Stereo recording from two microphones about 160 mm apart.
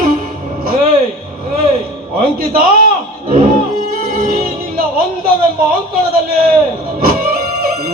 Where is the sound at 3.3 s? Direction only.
65° right (ahead or behind).